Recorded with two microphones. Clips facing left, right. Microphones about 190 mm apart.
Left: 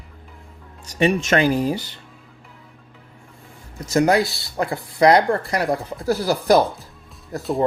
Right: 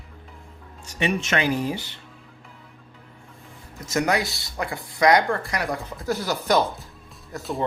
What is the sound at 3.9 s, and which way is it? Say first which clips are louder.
Speech: left 6 dB; 35° left (ahead or behind).